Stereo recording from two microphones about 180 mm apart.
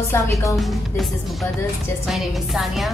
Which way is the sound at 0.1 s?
15° left (ahead or behind).